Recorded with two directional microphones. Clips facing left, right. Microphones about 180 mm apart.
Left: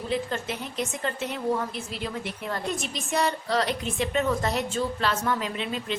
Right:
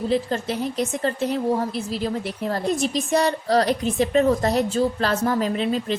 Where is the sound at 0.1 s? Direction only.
35° right (ahead or behind).